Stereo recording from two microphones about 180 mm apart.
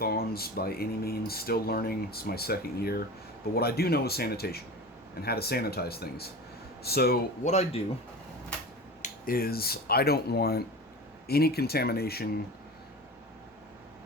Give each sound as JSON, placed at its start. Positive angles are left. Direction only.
{"t": 0.0, "sound": "speech", "side_deg": 60}
{"t": 7.4, "sound": "speech", "side_deg": 40}
{"t": 9.0, "sound": "speech", "side_deg": 55}